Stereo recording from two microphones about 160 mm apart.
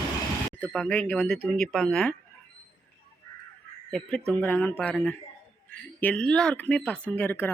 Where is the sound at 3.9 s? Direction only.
5° left (ahead or behind).